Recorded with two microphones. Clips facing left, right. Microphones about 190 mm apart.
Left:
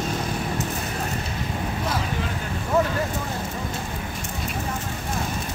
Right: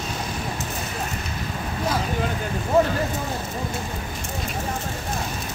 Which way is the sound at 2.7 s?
30° right (ahead or behind).